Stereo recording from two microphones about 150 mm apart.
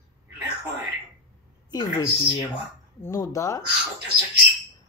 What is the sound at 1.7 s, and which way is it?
Speech, 30° left (ahead or behind).